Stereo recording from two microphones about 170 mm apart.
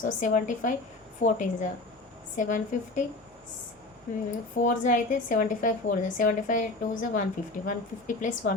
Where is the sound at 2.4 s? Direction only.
50° left (ahead or behind).